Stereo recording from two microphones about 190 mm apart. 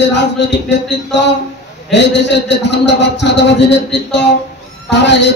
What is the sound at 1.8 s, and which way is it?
A man's voice, 65° left (ahead or behind).